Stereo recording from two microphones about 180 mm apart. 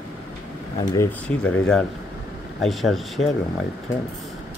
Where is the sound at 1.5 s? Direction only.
5° left (ahead or behind).